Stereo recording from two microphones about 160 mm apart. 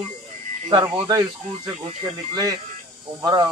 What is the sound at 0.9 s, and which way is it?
A man's voice, 25° right (ahead or behind).